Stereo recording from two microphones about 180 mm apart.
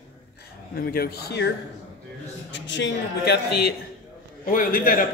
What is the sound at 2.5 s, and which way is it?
A man's voice, 90° left.